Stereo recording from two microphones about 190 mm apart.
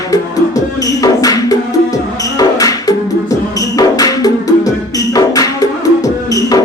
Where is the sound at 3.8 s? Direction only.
20° left (ahead or behind).